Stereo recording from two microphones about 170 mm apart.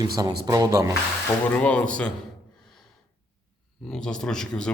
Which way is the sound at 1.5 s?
5° left (ahead or behind).